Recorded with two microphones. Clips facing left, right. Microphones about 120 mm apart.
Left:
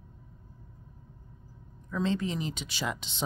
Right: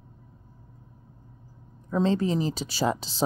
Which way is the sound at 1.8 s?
35° right (ahead or behind).